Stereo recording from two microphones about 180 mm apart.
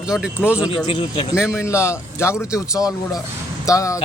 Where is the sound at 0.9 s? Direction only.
30° left (ahead or behind).